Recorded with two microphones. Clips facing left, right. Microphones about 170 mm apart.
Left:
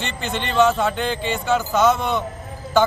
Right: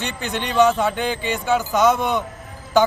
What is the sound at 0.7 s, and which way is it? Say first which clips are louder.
A man's voice: even; 15° right (ahead or behind).